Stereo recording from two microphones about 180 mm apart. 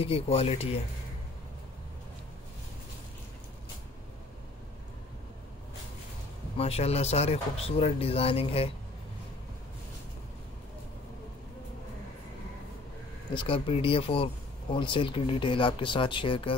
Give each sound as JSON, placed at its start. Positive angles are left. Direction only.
{"t": 0.0, "sound": "speech", "side_deg": 30}
{"t": 6.5, "sound": "speech", "side_deg": 35}
{"t": 13.3, "sound": "speech", "side_deg": 30}